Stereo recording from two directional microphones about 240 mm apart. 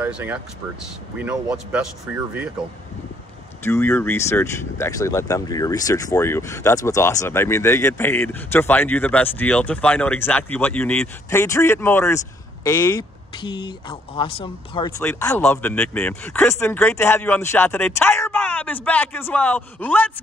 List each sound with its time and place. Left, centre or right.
0.0 s speech: centre
3.6 s speech: centre
15.0 s speech: centre